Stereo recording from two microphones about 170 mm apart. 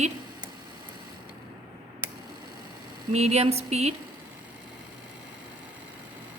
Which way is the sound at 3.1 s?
40° right (ahead or behind).